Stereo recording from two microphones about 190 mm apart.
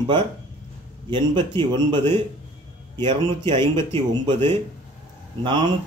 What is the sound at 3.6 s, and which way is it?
Speech, 15° left (ahead or behind).